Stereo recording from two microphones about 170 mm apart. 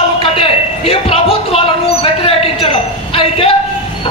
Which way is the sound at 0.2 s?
35° left (ahead or behind).